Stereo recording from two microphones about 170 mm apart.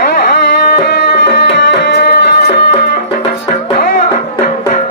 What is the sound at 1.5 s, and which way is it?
Music, 80° left.